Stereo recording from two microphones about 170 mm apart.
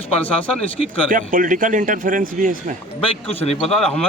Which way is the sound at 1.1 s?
50° right (ahead or behind).